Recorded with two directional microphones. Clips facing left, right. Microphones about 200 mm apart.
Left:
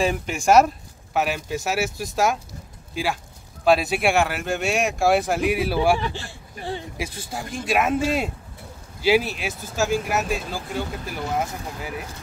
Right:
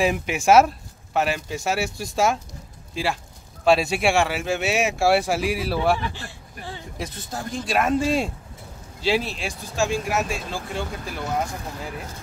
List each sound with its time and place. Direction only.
0.0 s speech: 5° right (ahead or behind)
2.9 s speech: centre (ahead or behind)
6.1 s speech: 30° left (ahead or behind)
7.0 s speech: 10° left (ahead or behind)
9.0 s speech: 5° left (ahead or behind)